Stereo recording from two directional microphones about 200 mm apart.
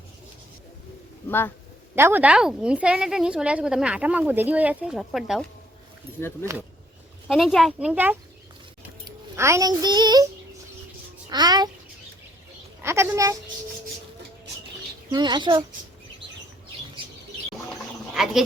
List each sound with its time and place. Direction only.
1.3 s speech: 10° left (ahead or behind)
2.0 s a woman's voice: 10° right (ahead or behind)
7.3 s a woman's voice: centre (ahead or behind); by 10.2 s 20° right (ahead or behind)
11.3 s speech: 20° right (ahead or behind)
12.8 s a woman's voice: 15° right (ahead or behind)
15.1 s speech: 20° right (ahead or behind)
17.7 s a sound: centre (ahead or behind)